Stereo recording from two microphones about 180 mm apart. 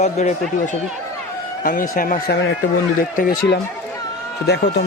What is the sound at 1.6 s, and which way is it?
Speech, 50° left (ahead or behind).